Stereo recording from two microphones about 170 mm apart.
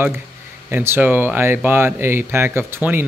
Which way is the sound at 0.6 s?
15° right (ahead or behind).